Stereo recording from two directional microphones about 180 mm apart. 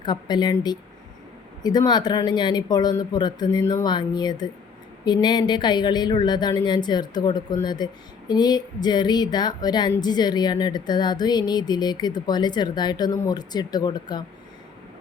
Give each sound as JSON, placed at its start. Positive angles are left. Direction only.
{"t": 0.0, "sound": "speech", "side_deg": 25}